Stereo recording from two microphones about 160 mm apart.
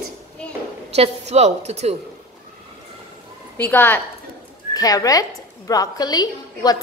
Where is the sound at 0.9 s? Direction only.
40° right (ahead or behind).